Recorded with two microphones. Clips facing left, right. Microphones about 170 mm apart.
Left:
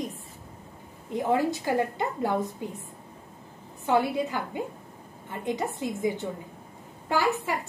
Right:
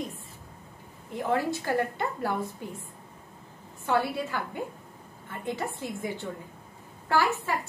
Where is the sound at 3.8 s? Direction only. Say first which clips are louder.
Left 3 dB; 15° left (ahead or behind).